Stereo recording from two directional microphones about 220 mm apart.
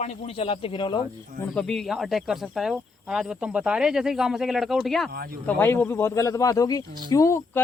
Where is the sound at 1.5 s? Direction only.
Centre (ahead or behind).